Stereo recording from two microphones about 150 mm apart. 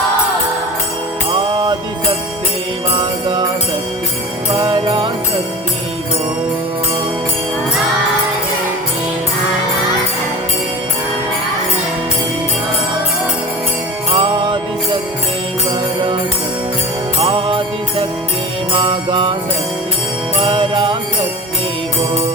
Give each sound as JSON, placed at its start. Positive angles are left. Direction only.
{"t": 2.9, "sound": "mantra", "side_deg": -30}
{"t": 4.5, "sound": "music", "side_deg": -30}
{"t": 14.1, "sound": "music", "side_deg": -35}
{"t": 17.2, "sound": "music", "side_deg": -35}
{"t": 18.7, "sound": "mantra", "side_deg": -35}
{"t": 20.4, "sound": "jingle bell", "side_deg": -30}